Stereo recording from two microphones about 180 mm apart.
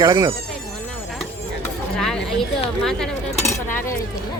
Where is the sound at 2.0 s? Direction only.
Centre (ahead or behind).